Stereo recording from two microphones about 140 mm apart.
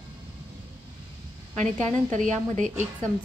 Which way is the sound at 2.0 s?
60° right (ahead or behind).